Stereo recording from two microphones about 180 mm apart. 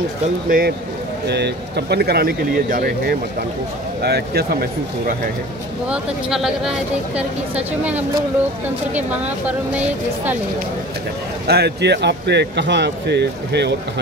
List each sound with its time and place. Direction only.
0.5 s speech: 55° right (ahead or behind)
1.2 s speech: 70° right (ahead or behind)
5.9 s speech: 5° right (ahead or behind)
11.4 s speech: 65° right (ahead or behind)